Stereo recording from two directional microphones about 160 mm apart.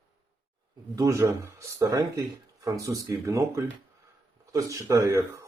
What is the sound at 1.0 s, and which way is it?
Speech, 20° right (ahead or behind).